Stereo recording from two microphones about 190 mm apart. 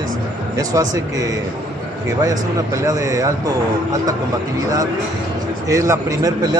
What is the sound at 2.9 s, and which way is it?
Speech, 15° right (ahead or behind).